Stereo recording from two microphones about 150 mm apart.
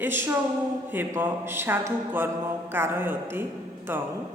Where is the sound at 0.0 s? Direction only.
15° right (ahead or behind).